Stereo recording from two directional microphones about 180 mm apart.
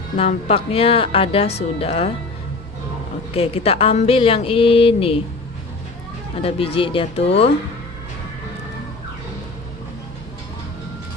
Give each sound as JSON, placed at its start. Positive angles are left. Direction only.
{"t": 0.2, "sound": "a woman's voice", "side_deg": 35}
{"t": 3.3, "sound": "a woman's voice", "side_deg": 35}
{"t": 6.3, "sound": "a woman's voice", "side_deg": 30}